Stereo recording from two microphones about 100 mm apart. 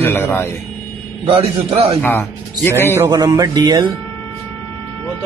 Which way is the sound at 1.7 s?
90° right.